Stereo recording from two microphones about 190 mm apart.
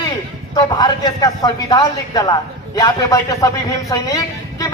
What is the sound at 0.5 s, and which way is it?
A woman's voice, 20° left (ahead or behind).